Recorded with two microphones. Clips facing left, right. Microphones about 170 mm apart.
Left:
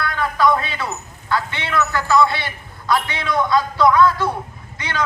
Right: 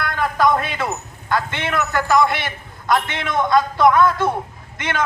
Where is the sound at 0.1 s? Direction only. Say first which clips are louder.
Right 1 dB; 50° right (ahead or behind).